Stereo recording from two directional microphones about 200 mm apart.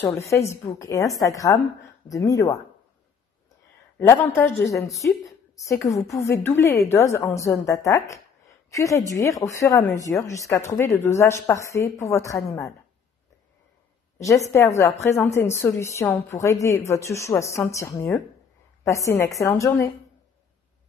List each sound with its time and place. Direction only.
0.2 s speech: 15° left (ahead or behind)
4.1 s a woman's voice: 10° left (ahead or behind)
14.1 s speech: 15° left (ahead or behind)